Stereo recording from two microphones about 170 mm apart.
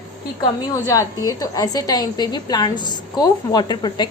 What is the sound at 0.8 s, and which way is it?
A woman's voice, 20° left (ahead or behind).